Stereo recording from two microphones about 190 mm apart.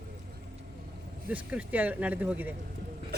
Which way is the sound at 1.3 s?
10° right (ahead or behind).